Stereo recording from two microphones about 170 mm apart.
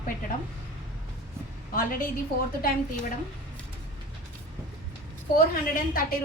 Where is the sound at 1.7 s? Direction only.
55° left (ahead or behind).